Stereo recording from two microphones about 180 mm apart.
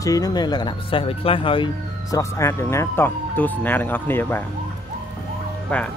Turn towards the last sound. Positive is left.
turn(degrees=10)  # may be behind; listen again after turning